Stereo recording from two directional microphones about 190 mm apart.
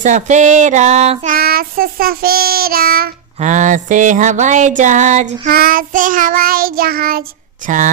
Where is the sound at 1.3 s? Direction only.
50° right (ahead or behind).